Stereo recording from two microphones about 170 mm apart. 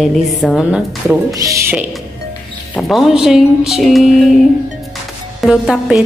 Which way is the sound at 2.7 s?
Centre (ahead or behind).